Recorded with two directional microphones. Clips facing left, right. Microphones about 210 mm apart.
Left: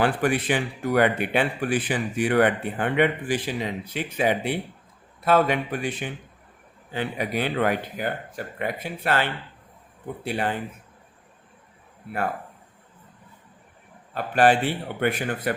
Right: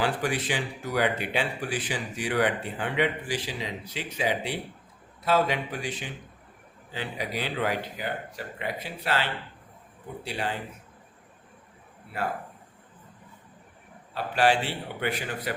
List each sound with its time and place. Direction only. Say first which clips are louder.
0.0 s speech: left 5 dB; 55° left (ahead or behind)
14.1 s a man's voice: left 4 dB; 50° left (ahead or behind)